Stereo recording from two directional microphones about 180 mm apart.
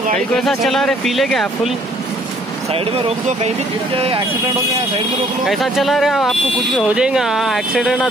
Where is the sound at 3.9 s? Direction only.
30° right (ahead or behind).